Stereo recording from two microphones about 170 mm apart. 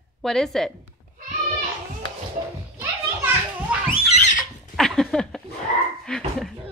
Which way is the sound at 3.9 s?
40° left (ahead or behind).